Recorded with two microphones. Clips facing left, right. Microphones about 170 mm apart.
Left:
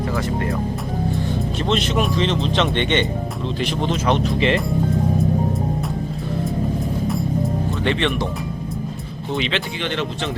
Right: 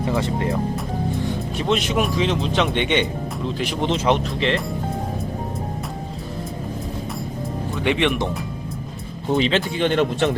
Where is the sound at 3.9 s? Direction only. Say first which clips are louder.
Right 1 dB; 20° right (ahead or behind).